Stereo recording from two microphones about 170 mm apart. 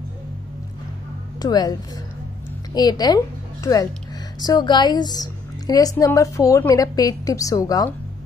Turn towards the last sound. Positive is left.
turn(degrees=20)  # may be behind; listen again after turning